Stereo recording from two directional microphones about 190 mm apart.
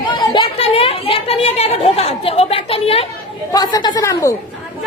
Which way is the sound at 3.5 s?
20° left (ahead or behind).